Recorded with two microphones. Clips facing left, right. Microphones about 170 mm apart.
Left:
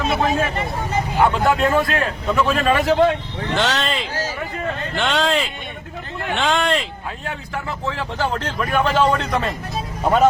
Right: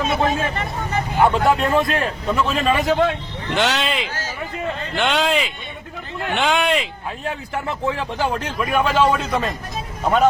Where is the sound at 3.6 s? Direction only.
10° right (ahead or behind).